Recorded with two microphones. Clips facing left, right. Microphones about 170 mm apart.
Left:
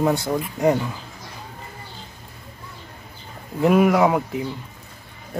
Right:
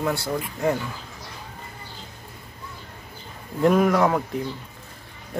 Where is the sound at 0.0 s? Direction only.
20° left (ahead or behind).